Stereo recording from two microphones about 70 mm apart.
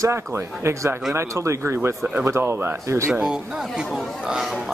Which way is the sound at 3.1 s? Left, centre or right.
Centre.